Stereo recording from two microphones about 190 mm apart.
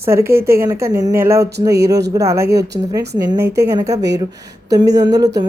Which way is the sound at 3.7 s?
20° right (ahead or behind).